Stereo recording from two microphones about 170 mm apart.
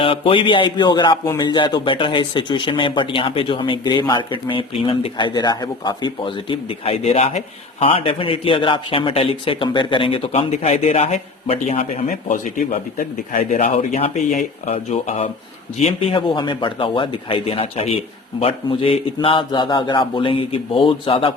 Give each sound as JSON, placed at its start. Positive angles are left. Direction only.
{"t": 0.0, "sound": "speech", "side_deg": 30}
{"t": 12.0, "sound": "a man's voice", "side_deg": 50}